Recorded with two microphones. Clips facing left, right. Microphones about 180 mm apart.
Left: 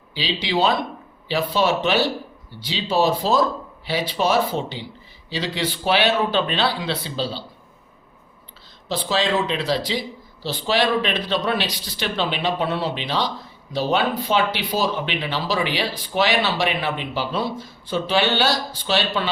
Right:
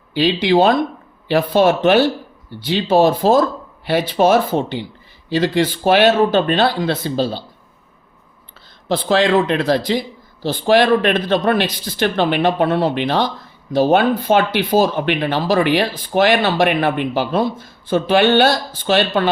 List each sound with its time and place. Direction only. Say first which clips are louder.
0.1 s speech: right 10 dB; 55° right (ahead or behind)
8.9 s speech: right 7 dB; 55° right (ahead or behind)